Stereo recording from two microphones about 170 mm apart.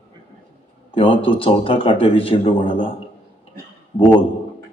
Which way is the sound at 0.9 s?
30° left (ahead or behind).